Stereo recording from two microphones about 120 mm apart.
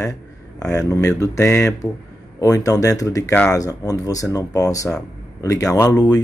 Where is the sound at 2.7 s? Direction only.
30° left (ahead or behind).